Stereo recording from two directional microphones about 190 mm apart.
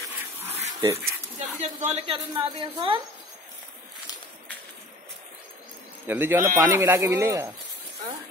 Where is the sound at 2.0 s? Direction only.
25° right (ahead or behind).